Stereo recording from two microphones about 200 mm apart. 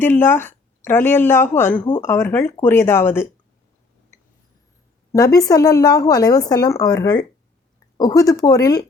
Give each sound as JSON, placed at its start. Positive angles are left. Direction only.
{"t": 0.0, "sound": "speech", "side_deg": 10}
{"t": 5.1, "sound": "speech", "side_deg": 15}